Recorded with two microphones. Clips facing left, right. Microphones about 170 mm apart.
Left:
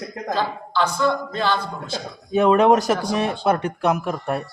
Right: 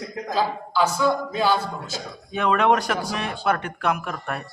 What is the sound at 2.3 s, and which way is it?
Speech, 35° left (ahead or behind).